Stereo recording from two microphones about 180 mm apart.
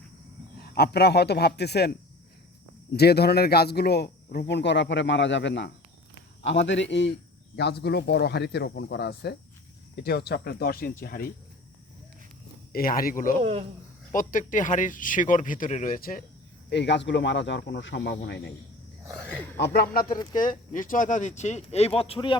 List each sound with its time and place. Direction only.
0.6 s speech: 60° left (ahead or behind); by 7.1 s 80° left
7.5 s speech: 65° left (ahead or behind)
12.7 s speech: 55° left (ahead or behind)
13.4 s speech: 30° right (ahead or behind)
14.1 s speech: 45° left (ahead or behind)
16.6 s speech: 75° left (ahead or behind)
19.5 s speech: 60° left (ahead or behind); by 22.4 s 30° left (ahead or behind)